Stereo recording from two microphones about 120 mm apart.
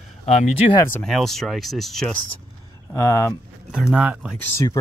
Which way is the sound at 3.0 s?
25° left (ahead or behind).